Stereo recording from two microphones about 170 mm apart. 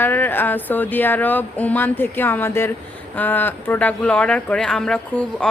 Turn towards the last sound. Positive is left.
turn(degrees=5)  # may be behind; listen again after turning